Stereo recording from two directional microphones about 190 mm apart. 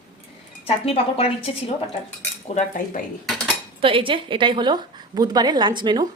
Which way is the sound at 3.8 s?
30° right (ahead or behind).